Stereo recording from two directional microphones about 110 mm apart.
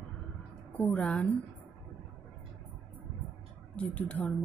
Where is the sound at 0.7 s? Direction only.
15° left (ahead or behind).